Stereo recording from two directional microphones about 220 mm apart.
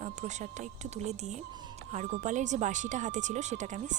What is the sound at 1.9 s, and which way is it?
Speech, 35° right (ahead or behind).